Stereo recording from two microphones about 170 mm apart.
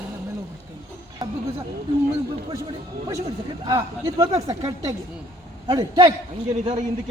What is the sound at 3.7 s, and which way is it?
A man's voice, 20° right (ahead or behind).